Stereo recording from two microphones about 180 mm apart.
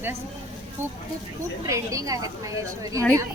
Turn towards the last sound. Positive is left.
turn(degrees=-20)  # may be behind; listen again after turning